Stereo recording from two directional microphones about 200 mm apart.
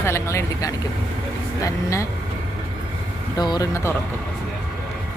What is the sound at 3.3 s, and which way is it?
Speech, 20° left (ahead or behind).